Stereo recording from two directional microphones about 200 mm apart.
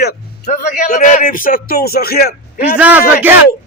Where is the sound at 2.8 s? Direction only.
10° right (ahead or behind).